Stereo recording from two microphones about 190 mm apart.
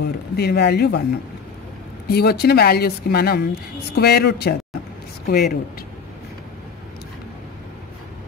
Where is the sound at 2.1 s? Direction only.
55° left (ahead or behind).